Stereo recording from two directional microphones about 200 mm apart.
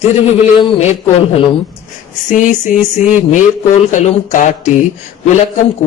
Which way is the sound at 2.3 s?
40° left (ahead or behind).